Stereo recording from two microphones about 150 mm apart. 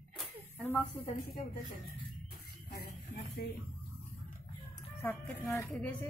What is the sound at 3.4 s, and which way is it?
Speech, 80° left.